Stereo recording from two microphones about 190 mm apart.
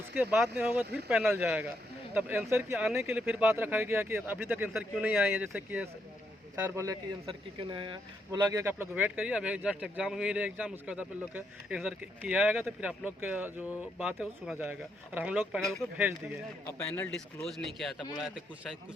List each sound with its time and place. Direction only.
0.2 s speech: 10° right (ahead or behind)
2.7 s speech: centre (ahead or behind)
7.3 s speech: 25° right (ahead or behind); by 15.8 s centre (ahead or behind)
16.6 s speech: 10° left (ahead or behind)
17.9 s speech: 25° left (ahead or behind)